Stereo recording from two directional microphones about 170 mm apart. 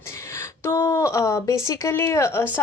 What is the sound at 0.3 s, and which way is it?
A woman's voice, 15° left (ahead or behind).